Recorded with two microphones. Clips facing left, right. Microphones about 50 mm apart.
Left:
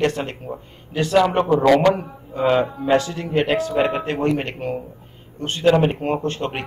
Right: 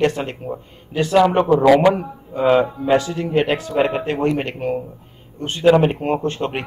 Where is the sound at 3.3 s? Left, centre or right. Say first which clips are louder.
Even; centre.